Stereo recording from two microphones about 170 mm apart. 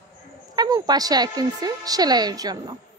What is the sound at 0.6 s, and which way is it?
A woman's voice, 20° right (ahead or behind).